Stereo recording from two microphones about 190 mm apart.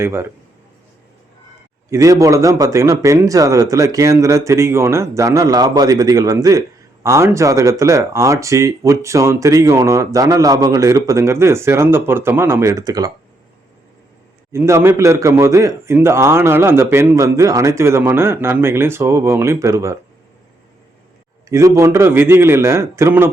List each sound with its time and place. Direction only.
0.0 s speech: 15° right (ahead or behind)
1.9 s speech: 15° right (ahead or behind)
14.5 s speech: 15° right (ahead or behind)
21.5 s speech: 15° right (ahead or behind)